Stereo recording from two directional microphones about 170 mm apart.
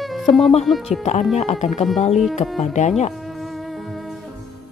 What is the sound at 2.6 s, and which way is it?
Speech, 45° left (ahead or behind).